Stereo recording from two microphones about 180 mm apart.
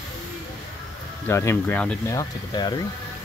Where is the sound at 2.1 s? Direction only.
25° left (ahead or behind).